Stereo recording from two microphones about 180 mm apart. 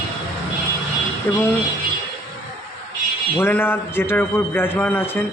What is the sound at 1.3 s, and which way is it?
Speech, 10° left (ahead or behind).